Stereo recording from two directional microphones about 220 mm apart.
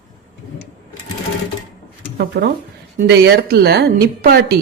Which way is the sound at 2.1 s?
45° right (ahead or behind).